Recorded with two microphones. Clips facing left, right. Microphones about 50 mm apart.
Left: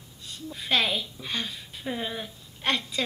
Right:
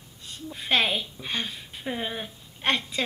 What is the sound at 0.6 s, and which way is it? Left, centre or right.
A woman's voice, centre.